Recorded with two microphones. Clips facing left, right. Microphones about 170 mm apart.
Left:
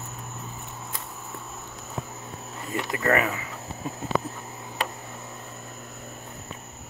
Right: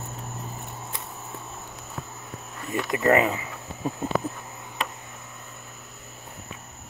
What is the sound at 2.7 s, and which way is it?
Speech, 20° right (ahead or behind).